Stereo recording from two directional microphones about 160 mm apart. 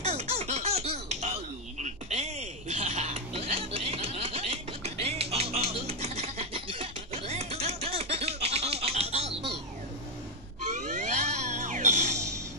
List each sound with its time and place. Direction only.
0.0 s baby laughter: 40° right (ahead or behind)
10.8 s music: 45° right (ahead or behind)